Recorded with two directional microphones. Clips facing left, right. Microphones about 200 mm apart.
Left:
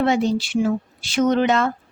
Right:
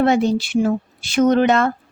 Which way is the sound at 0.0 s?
55° right (ahead or behind).